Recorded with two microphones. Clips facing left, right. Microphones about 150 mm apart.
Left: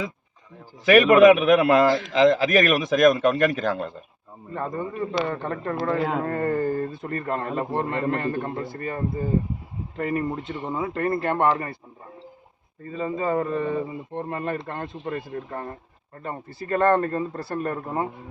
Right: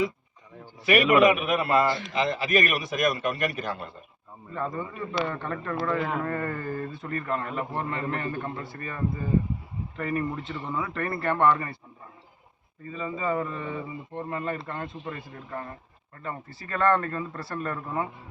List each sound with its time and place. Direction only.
1.2 s speech: 90° left
4.5 s speech: 40° left (ahead or behind)
7.9 s speech: 55° left (ahead or behind); by 11.8 s 35° left (ahead or behind)
12.8 s speech: 45° left (ahead or behind)
14.1 s speech: 30° left (ahead or behind)
14.3 s speech: 45° left (ahead or behind)